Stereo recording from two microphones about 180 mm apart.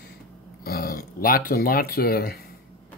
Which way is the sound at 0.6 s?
55° left (ahead or behind).